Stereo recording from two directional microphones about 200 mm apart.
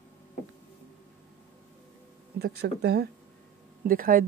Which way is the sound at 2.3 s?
55° right (ahead or behind).